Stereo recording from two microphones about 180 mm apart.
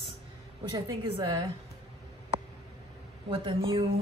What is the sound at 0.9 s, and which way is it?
Speech, 15° right (ahead or behind).